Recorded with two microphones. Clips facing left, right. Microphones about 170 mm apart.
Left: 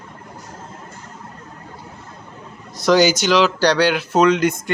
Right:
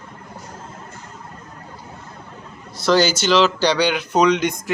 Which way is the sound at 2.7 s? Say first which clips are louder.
Left 2 dB; 15° left (ahead or behind).